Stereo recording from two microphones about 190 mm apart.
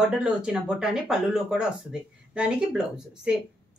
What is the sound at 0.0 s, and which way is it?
Speech, 5° right (ahead or behind).